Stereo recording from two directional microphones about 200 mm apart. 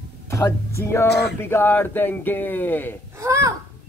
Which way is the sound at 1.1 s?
55° left (ahead or behind).